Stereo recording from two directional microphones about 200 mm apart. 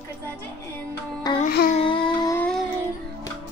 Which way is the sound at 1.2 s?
20° left (ahead or behind).